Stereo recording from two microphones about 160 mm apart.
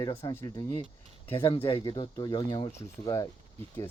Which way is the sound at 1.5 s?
35° left (ahead or behind).